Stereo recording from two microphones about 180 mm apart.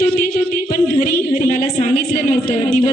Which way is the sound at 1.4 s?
45° left (ahead or behind).